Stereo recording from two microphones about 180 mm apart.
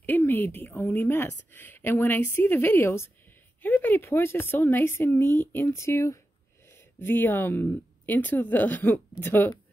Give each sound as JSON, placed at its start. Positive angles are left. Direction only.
{"t": 0.0, "sound": "a woman's voice", "side_deg": 10}